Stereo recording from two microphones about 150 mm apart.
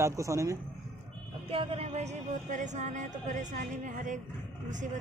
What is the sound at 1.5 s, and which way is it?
Speech, 40° right (ahead or behind).